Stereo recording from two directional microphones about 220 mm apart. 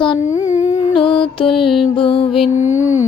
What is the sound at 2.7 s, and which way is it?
Mantra, 15° left (ahead or behind).